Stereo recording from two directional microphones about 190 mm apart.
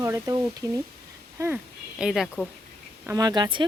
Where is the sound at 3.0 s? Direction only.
20° right (ahead or behind).